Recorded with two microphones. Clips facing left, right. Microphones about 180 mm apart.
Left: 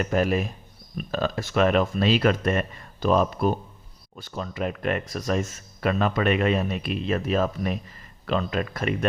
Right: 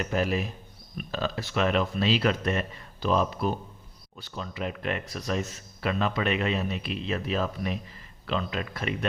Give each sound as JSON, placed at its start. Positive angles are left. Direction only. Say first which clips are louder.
{"t": 0.0, "sound": "speech", "louder": "left 4 dB", "side_deg": 50}